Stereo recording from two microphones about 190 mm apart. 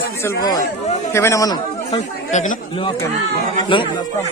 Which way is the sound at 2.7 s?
25° left (ahead or behind).